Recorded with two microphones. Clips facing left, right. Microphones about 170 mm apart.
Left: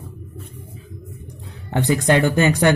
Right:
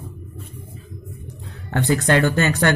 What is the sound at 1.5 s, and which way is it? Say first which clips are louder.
Speech: left 1 dB; 20° left (ahead or behind).